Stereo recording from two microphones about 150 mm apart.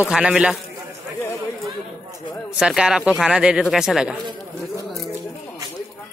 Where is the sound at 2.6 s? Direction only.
5° right (ahead or behind).